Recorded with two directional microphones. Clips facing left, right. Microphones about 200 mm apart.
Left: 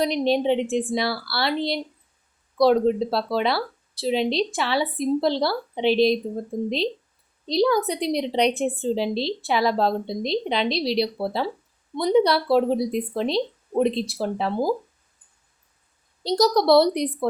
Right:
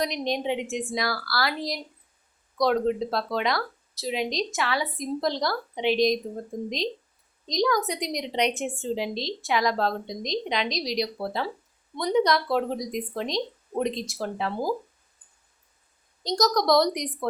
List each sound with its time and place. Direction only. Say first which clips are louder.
0.0 s a woman's voice: left 6 dB; 30° left (ahead or behind)
6.5 s speech: left 6 dB; 5° left (ahead or behind)
7.4 s a woman's voice: left 4 dB; 30° left (ahead or behind)
16.4 s a woman's voice: left 5 dB; 30° left (ahead or behind)